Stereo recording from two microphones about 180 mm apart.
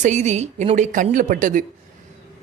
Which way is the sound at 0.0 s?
40° right (ahead or behind).